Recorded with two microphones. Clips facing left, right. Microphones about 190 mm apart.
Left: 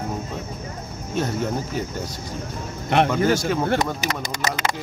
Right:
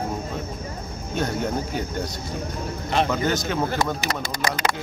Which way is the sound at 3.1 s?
5° left (ahead or behind).